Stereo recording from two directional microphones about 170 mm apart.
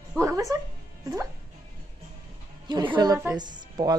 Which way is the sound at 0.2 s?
20° right (ahead or behind).